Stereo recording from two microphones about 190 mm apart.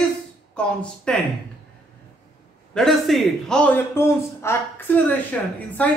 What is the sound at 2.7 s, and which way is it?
A man's voice, centre (ahead or behind).